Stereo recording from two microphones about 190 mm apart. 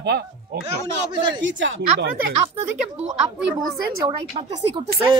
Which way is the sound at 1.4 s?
75° right (ahead or behind).